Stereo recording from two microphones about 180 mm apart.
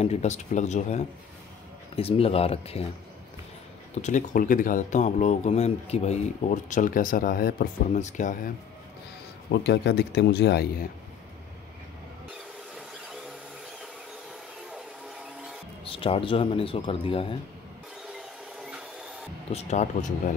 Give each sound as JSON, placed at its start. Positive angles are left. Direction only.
{"t": 0.0, "sound": "a man's voice", "side_deg": 35}
{"t": 3.9, "sound": "speech", "side_deg": 40}
{"t": 9.5, "sound": "speech", "side_deg": 70}
{"t": 12.7, "sound": "vehicle", "side_deg": 0}
{"t": 15.8, "sound": "a man's voice", "side_deg": 30}
{"t": 18.0, "sound": "a sound", "side_deg": 0}
{"t": 19.5, "sound": "a man's voice", "side_deg": 40}